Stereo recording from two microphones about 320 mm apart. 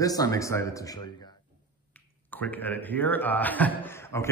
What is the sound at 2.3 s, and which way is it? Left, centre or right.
A man's voice, centre.